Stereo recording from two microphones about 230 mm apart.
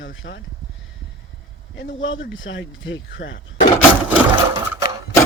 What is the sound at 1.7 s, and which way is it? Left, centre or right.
Speech, left.